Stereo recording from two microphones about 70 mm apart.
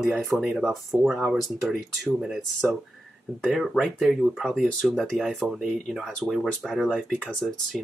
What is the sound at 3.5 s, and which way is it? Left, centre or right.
Speech, centre.